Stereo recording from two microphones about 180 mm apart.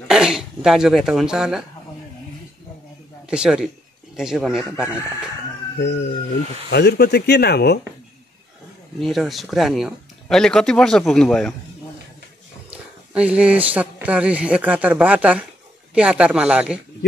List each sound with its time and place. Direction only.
0.1 s speech: 5° right (ahead or behind)
3.3 s speech: 5° right (ahead or behind)
6.7 s speech: 65° left (ahead or behind)
9.0 s speech: centre (ahead or behind)
12.7 s speech: 5° right (ahead or behind)